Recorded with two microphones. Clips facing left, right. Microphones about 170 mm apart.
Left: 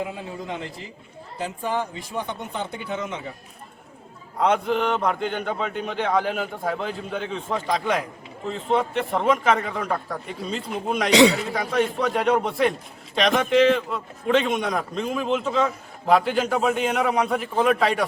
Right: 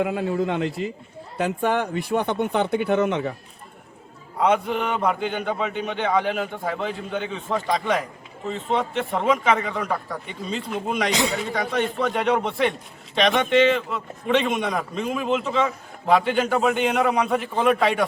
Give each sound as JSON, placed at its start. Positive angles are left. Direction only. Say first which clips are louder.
{"t": 0.0, "sound": "speech", "louder": "right 8 dB", "side_deg": -65}
{"t": 4.4, "sound": "a man's voice", "louder": "even", "side_deg": -5}
{"t": 11.1, "sound": "a man's voice", "louder": "left 13 dB", "side_deg": 70}
{"t": 11.3, "sound": "a man's voice", "louder": "left 1 dB", "side_deg": 0}